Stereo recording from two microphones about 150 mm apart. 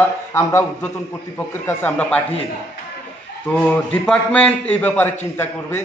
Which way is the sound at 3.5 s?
10° left (ahead or behind).